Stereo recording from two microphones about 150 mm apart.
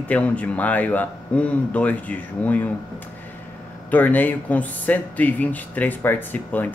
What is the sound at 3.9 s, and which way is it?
Speech, 10° left (ahead or behind).